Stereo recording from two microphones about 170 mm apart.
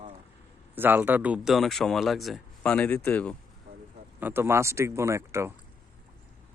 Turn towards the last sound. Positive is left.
turn(degrees=-15)  # may be behind; listen again after turning